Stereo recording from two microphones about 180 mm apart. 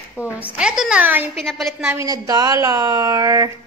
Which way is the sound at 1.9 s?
20° right (ahead or behind).